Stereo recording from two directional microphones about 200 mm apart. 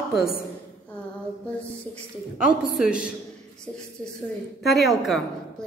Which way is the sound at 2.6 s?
Centre (ahead or behind).